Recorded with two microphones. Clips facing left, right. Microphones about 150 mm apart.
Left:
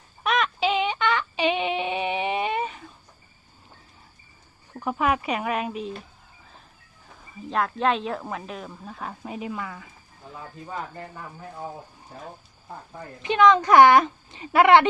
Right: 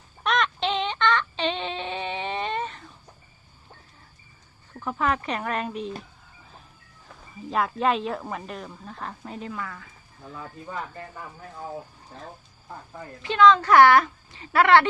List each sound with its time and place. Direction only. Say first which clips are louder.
0.2 s synthetic singing: left 1 dB; 5° left (ahead or behind)
4.7 s speech: left 2 dB; 15° left (ahead or behind)
7.5 s speech: even; centre (ahead or behind); by 9.8 s 15° left (ahead or behind)
13.2 s a woman's voice: even; 20° left (ahead or behind)